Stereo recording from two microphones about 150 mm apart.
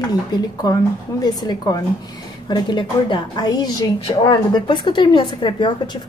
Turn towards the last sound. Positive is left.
turn(degrees=30)  # may be behind; listen again after turning